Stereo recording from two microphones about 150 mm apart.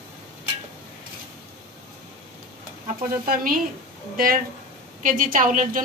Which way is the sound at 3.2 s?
75° right (ahead or behind).